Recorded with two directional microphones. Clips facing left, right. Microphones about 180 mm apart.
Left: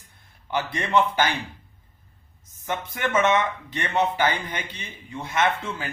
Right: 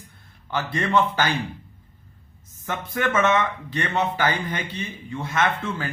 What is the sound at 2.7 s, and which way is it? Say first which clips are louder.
A man's voice: right 1 dB; 15° left (ahead or behind).